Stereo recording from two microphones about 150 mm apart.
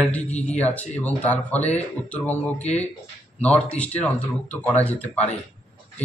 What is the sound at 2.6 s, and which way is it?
Speech, 45° left (ahead or behind).